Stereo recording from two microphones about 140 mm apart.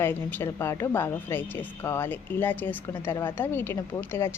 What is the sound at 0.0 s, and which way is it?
A woman's voice, 15° left (ahead or behind).